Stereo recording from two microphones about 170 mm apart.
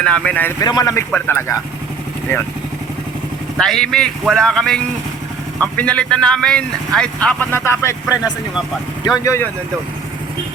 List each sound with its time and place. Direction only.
0.0 s speech: 5° left (ahead or behind)
0.6 s speech: 20° left (ahead or behind)
3.6 s speech: centre (ahead or behind)
9.1 s speech: 15° left (ahead or behind)